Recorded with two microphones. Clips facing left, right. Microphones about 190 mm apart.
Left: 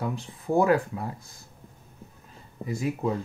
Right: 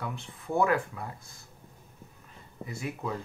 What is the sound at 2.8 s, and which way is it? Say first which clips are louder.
Speech: left 7 dB; 25° left (ahead or behind).